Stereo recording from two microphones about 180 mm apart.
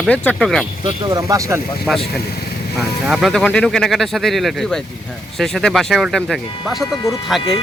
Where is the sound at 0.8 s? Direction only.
20° right (ahead or behind).